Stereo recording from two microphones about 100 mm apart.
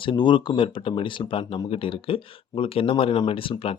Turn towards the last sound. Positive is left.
turn(degrees=60)  # may be behind; listen again after turning